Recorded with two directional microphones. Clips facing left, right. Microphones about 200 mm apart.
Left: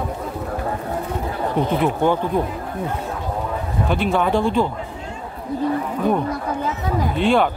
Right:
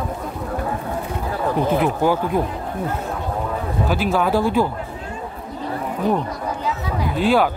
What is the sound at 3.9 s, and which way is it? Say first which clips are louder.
Speech: even; 5° right (ahead or behind).